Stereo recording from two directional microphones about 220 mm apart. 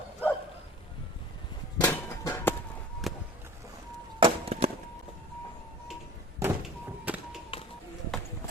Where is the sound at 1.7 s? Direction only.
10° left (ahead or behind).